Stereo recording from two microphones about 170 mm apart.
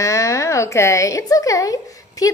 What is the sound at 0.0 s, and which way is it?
A woman's voice, 15° left (ahead or behind).